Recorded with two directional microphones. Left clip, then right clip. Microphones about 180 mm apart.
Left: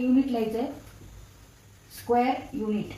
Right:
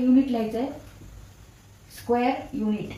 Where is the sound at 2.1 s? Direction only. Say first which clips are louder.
Left 1 dB; 5° right (ahead or behind).